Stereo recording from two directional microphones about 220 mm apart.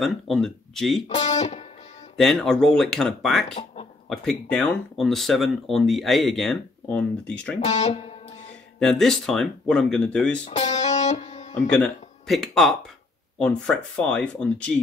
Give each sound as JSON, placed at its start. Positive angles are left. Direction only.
{"t": 0.0, "sound": "speech", "side_deg": 0}
{"t": 1.0, "sound": "speech", "side_deg": 30}
{"t": 2.1, "sound": "speech", "side_deg": 0}
{"t": 7.6, "sound": "speech", "side_deg": 30}
{"t": 8.7, "sound": "speech", "side_deg": 0}
{"t": 10.4, "sound": "music", "side_deg": 30}
{"t": 11.8, "sound": "speech", "side_deg": 0}